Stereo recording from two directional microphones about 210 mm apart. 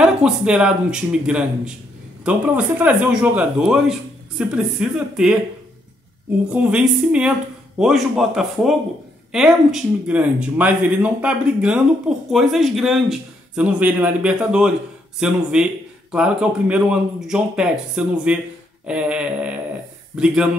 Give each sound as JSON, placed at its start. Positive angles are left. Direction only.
{"t": 0.0, "sound": "speech", "side_deg": -5}
{"t": 6.5, "sound": "speech", "side_deg": -5}